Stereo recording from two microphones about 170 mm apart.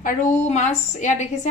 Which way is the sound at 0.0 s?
45° left (ahead or behind).